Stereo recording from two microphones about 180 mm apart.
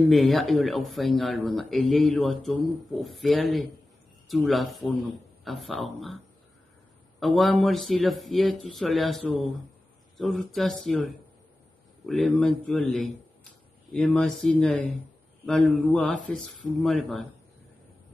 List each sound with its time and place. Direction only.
0.1 s speech: centre (ahead or behind)
7.2 s speech: centre (ahead or behind)
12.1 s speech: centre (ahead or behind)